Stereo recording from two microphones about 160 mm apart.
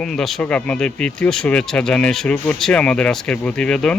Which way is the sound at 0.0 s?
5° left (ahead or behind).